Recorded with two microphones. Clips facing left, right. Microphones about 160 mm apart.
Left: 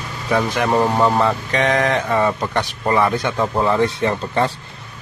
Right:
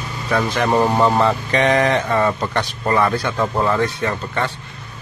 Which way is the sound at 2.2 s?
10° left (ahead or behind).